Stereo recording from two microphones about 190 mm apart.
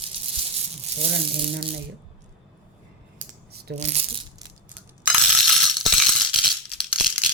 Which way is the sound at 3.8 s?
35° right (ahead or behind).